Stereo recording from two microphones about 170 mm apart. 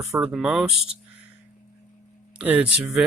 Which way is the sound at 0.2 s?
5° right (ahead or behind).